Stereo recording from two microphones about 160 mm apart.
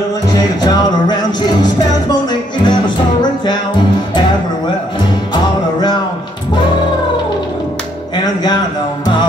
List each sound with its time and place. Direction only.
0.3 s music: 25° left (ahead or behind)
5.3 s music: 30° left (ahead or behind)